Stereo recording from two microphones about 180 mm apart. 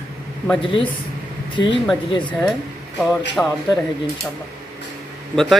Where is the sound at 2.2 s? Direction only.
5° left (ahead or behind).